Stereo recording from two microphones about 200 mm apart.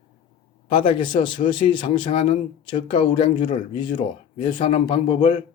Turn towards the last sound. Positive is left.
turn(degrees=25)  # may be behind; listen again after turning